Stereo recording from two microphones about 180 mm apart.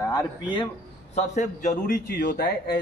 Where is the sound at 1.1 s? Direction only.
40° left (ahead or behind); by 2.7 s 65° left (ahead or behind).